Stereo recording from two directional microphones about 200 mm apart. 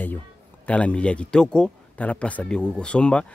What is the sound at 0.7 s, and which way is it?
Speech, 5° left (ahead or behind).